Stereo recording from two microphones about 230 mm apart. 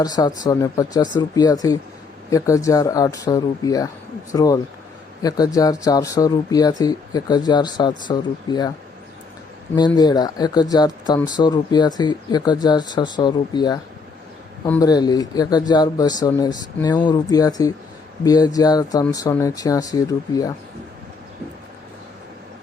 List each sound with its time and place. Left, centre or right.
0.0 s speech: centre
9.7 s speech: centre